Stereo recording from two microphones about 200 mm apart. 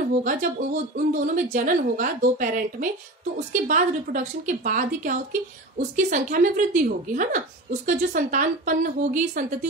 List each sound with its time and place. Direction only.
0.2 s speech: 45° right (ahead or behind)